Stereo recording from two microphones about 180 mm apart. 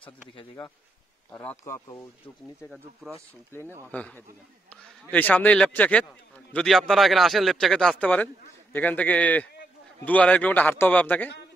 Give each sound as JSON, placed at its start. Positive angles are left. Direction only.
{"t": 0.0, "sound": "speech", "side_deg": 30}
{"t": 1.3, "sound": "a man's voice", "side_deg": 10}
{"t": 3.5, "sound": "a man's voice", "side_deg": 15}